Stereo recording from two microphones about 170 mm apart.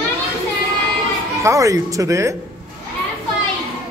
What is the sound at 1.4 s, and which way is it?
A man's voice, 20° right (ahead or behind).